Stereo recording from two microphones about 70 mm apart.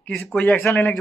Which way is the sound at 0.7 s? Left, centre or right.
Left.